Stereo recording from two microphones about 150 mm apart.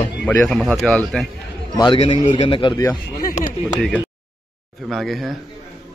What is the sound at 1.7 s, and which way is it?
A man's voice, 30° left (ahead or behind).